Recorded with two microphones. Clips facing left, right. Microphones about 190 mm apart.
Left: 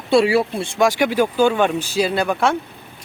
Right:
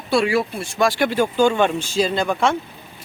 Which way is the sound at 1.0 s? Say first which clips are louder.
Right 1 dB; 10° left (ahead or behind).